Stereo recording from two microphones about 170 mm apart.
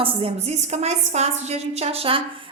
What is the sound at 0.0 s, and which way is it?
A woman's voice, 35° right (ahead or behind).